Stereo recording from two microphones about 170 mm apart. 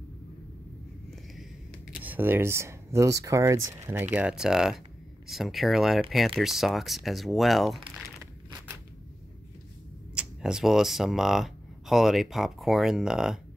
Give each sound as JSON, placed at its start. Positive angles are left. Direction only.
{"t": 2.0, "sound": "speech", "side_deg": -10}
{"t": 10.1, "sound": "speech", "side_deg": -5}